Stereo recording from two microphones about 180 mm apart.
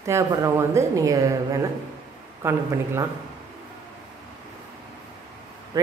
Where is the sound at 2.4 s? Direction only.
15° right (ahead or behind).